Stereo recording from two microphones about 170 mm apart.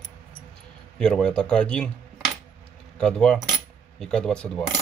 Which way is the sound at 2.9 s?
5° left (ahead or behind).